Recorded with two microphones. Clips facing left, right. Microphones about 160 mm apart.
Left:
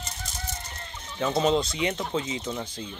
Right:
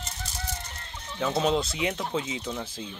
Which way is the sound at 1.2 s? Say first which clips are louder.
Left 2 dB; centre (ahead or behind).